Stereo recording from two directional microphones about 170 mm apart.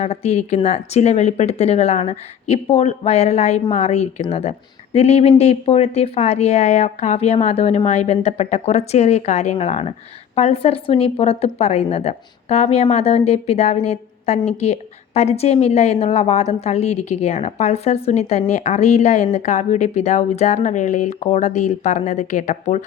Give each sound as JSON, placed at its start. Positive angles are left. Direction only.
{"t": 0.0, "sound": "a woman's voice", "side_deg": 40}